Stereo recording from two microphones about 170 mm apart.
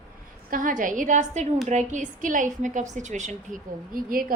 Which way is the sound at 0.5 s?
50° right (ahead or behind).